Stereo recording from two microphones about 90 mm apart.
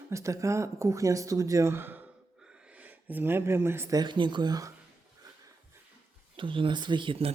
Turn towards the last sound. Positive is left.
turn(degrees=-85)